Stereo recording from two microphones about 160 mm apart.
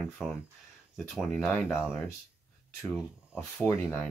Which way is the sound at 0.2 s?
5° right (ahead or behind).